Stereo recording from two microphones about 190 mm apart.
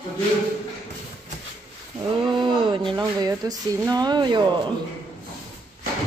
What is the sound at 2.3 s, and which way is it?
Speech, 25° right (ahead or behind).